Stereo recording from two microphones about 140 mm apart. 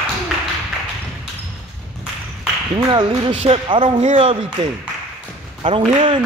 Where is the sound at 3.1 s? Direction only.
45° right (ahead or behind).